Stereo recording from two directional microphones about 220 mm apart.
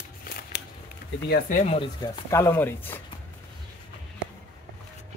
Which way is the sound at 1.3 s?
35° left (ahead or behind).